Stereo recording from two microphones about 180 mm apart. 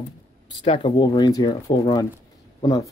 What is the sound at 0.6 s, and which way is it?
Speech, 25° left (ahead or behind).